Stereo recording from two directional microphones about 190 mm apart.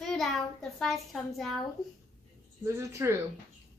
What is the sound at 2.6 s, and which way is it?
Speech, 15° right (ahead or behind).